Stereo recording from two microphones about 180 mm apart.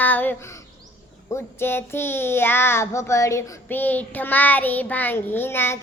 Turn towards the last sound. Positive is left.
turn(degrees=10)  # may be behind; listen again after turning